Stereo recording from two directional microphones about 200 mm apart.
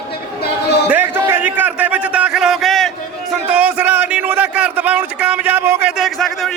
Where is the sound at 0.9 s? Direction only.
10° right (ahead or behind).